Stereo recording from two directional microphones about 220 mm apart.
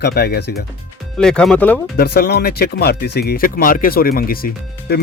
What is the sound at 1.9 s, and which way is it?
Speech, 45° left (ahead or behind).